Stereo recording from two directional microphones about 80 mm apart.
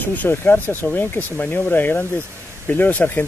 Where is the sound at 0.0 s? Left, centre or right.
Left.